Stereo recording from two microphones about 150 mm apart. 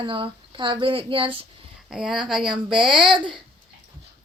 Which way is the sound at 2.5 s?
35° right (ahead or behind).